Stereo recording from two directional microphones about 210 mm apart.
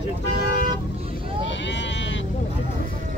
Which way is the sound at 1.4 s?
60° left (ahead or behind).